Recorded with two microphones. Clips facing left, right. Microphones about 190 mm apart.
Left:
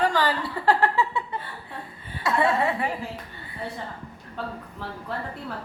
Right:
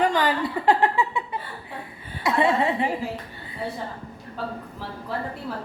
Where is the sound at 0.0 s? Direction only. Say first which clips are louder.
Right 2 dB; 15° right (ahead or behind).